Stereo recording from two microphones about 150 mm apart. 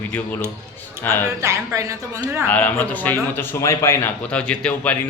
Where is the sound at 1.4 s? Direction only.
20° right (ahead or behind).